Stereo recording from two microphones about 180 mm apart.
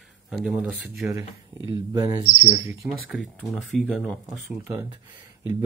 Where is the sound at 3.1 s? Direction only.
Centre (ahead or behind).